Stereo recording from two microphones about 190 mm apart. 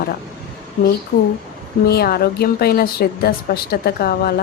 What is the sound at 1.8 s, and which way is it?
Speech, 55° left (ahead or behind).